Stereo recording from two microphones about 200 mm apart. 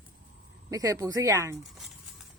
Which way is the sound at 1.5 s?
Centre (ahead or behind).